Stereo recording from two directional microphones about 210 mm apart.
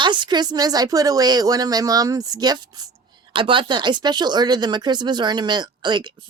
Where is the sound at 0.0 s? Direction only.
20° right (ahead or behind).